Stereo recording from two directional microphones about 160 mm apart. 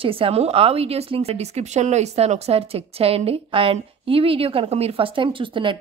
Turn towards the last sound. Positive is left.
turn(degrees=-30)  # may be behind; listen again after turning